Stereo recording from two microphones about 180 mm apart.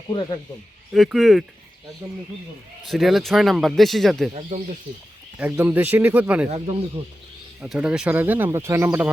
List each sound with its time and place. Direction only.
0.1 s speech: 25° left (ahead or behind)
0.9 s a man's voice: centre (ahead or behind)
2.8 s a man's voice: centre (ahead or behind)
4.4 s speech: 35° right (ahead or behind)
5.4 s speech: 10° right (ahead or behind)
7.0 s speech: 30° right (ahead or behind)
7.6 s speech: 5° right (ahead or behind)